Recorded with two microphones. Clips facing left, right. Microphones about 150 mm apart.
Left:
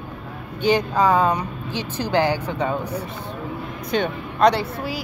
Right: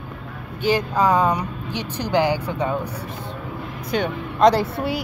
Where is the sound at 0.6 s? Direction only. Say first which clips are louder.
Left 1 dB; 5° right (ahead or behind).